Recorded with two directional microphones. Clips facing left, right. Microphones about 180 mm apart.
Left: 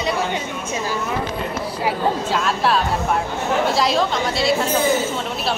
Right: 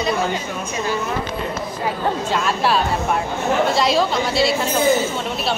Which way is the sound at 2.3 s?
Centre (ahead or behind).